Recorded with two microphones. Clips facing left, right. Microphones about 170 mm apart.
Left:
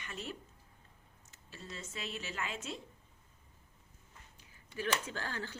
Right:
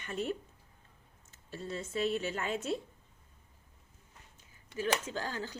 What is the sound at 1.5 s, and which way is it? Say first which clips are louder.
A woman's voice: right 10 dB; 30° right (ahead or behind).